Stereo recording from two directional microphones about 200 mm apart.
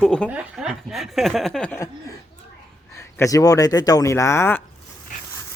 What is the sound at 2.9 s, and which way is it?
Speech, 15° left (ahead or behind).